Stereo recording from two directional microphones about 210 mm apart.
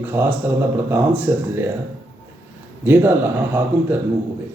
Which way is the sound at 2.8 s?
10° right (ahead or behind).